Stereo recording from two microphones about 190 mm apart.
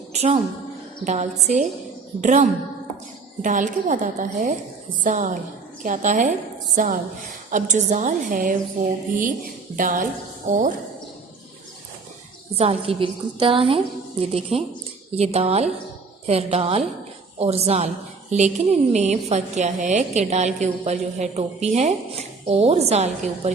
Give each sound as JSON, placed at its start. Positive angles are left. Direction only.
{"t": 0.1, "sound": "a woman's voice", "side_deg": -35}
{"t": 9.7, "sound": "a woman's voice", "side_deg": -45}
{"t": 12.5, "sound": "a woman's voice", "side_deg": -30}